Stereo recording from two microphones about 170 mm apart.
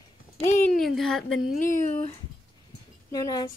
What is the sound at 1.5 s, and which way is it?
Speech, 50° left (ahead or behind).